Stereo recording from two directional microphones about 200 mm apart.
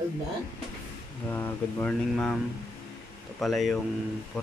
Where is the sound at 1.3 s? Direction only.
10° left (ahead or behind).